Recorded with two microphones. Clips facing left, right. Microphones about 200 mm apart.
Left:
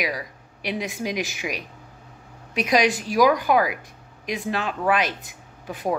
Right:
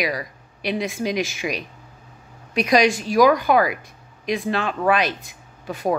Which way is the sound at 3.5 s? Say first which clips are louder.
Right 2 dB; 10° left (ahead or behind).